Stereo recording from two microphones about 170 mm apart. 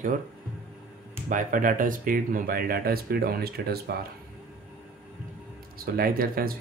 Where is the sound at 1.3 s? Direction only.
50° right (ahead or behind); by 3.8 s 70° right (ahead or behind).